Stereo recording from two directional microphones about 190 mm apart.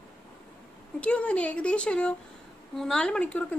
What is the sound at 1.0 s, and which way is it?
Speech, 5° left (ahead or behind).